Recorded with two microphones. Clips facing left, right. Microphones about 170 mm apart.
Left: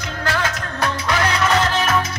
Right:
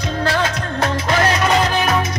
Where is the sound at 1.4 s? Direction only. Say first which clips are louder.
Right 2 dB; 20° right (ahead or behind).